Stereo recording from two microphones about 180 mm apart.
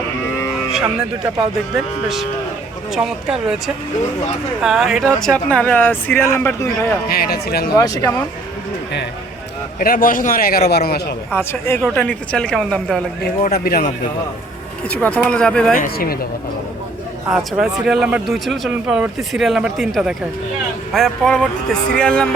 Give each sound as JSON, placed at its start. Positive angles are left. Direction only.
{"t": 1.7, "sound": "speech", "side_deg": 0}
{"t": 4.6, "sound": "speech", "side_deg": 0}
{"t": 7.1, "sound": "speech", "side_deg": 60}
{"t": 7.7, "sound": "speech", "side_deg": 20}
{"t": 9.8, "sound": "a man's voice", "side_deg": 50}
{"t": 11.3, "sound": "speech", "side_deg": 15}
{"t": 13.4, "sound": "speech", "side_deg": 55}
{"t": 14.8, "sound": "speech", "side_deg": 5}
{"t": 15.7, "sound": "a man's voice", "side_deg": 55}
{"t": 17.3, "sound": "speech", "side_deg": -5}